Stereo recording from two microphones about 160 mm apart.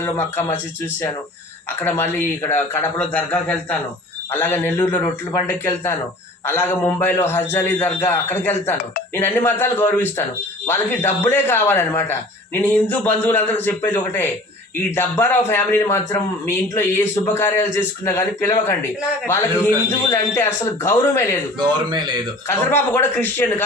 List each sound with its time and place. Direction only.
0.0 s a man's voice: 10° left (ahead or behind)
1.8 s a man's voice: 10° left (ahead or behind)
21.5 s speech: 25° right (ahead or behind)
22.7 s a man's voice: 15° left (ahead or behind)